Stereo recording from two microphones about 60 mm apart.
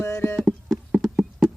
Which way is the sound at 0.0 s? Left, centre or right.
Left.